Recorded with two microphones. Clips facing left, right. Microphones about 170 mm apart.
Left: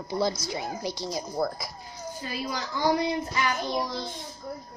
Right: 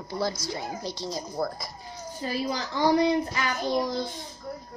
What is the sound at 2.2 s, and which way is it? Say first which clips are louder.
Speech: right 4 dB; 35° right (ahead or behind).